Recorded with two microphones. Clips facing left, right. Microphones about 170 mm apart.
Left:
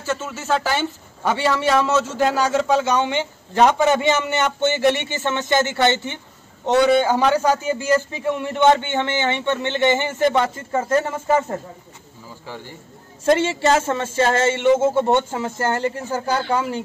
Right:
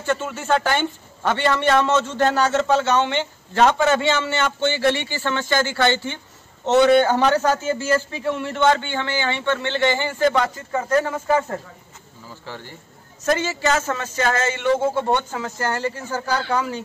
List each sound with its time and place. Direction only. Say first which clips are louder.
0.0 s a man's voice: right 2 dB; centre (ahead or behind); by 11.0 s 25° left (ahead or behind)
13.2 s a man's voice: left 4 dB; 30° left (ahead or behind)